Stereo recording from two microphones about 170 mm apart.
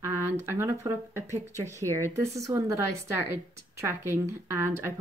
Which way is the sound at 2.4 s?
20° right (ahead or behind).